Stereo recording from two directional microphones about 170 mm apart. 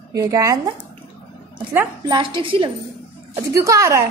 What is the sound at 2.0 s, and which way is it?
Speech, 30° right (ahead or behind).